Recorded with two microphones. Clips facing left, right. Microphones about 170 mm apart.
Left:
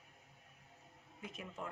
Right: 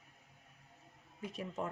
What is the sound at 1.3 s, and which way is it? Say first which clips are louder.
Speech: right 8 dB; 35° right (ahead or behind).